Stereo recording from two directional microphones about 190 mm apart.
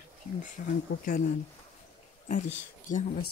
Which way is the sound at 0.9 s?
75° left (ahead or behind).